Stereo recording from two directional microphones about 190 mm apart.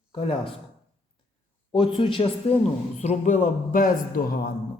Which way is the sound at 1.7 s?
25° left (ahead or behind).